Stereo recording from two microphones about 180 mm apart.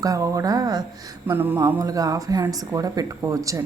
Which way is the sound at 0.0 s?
20° right (ahead or behind).